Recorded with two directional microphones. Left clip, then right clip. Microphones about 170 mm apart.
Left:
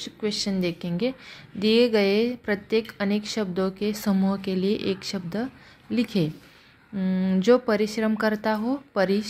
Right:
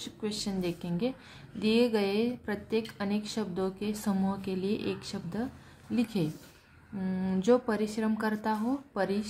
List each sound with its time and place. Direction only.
0.0 s a woman's voice: 25° left (ahead or behind)